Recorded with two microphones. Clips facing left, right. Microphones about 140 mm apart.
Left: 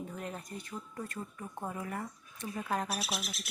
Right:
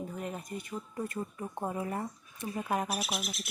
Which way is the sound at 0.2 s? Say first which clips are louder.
Right 3 dB; 5° right (ahead or behind).